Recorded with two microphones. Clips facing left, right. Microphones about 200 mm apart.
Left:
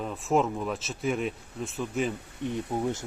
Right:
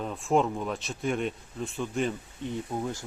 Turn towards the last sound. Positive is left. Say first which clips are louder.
# left 3 dB
turn(degrees=20)  # may be behind; listen again after turning